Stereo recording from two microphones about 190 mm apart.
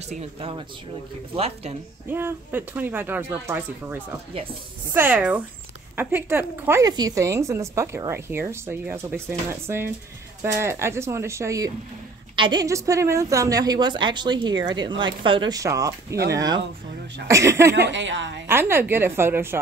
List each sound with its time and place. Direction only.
0.1 s speech: 30° right (ahead or behind)
2.0 s a woman's voice: 10° right (ahead or behind)
17.7 s a woman's voice: 70° right (ahead or behind)
18.5 s a woman's voice: 10° right (ahead or behind)